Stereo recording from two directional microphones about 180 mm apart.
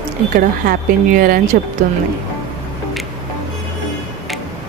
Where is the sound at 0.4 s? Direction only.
50° right (ahead or behind).